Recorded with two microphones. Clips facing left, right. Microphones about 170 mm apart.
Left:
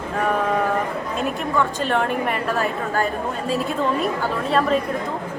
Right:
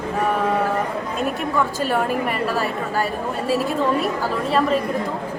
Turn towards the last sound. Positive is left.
turn(degrees=0)  # may be behind; listen again after turning